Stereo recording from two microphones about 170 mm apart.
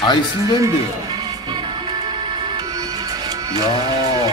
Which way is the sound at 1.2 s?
25° right (ahead or behind).